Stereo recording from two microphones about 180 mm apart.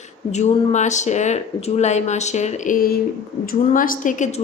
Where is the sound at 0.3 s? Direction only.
40° left (ahead or behind).